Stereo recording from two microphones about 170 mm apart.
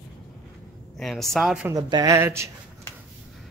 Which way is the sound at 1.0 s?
Centre (ahead or behind).